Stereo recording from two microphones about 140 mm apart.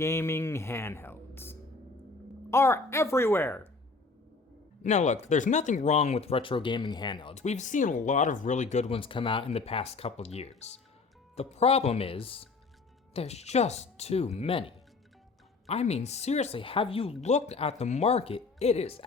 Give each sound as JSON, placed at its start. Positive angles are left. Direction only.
{"t": 0.0, "sound": "speech", "side_deg": 20}
{"t": 4.8, "sound": "speech", "side_deg": 55}
{"t": 7.3, "sound": "speech", "side_deg": 55}
{"t": 16.6, "sound": "speech", "side_deg": 40}